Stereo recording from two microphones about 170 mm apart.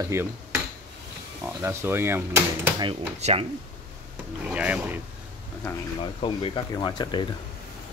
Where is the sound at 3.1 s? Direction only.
40° right (ahead or behind).